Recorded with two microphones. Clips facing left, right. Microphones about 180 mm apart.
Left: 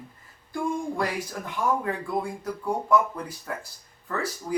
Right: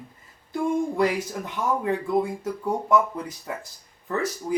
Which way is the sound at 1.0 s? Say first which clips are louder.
Right 5 dB; 20° right (ahead or behind).